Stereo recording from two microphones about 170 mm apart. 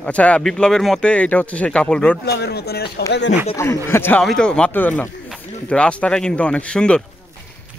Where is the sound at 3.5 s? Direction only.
15° left (ahead or behind).